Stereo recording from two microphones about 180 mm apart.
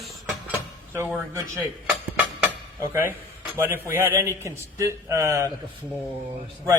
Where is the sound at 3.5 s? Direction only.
15° right (ahead or behind).